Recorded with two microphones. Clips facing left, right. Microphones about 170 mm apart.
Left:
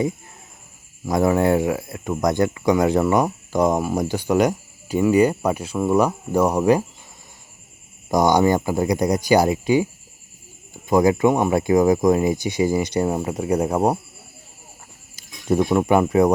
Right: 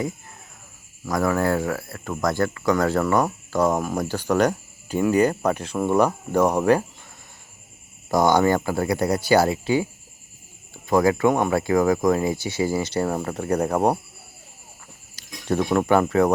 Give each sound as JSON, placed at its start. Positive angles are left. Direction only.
{"t": 1.0, "sound": "speech", "side_deg": 20}
{"t": 8.1, "sound": "speech", "side_deg": 15}
{"t": 15.1, "sound": "speech", "side_deg": 10}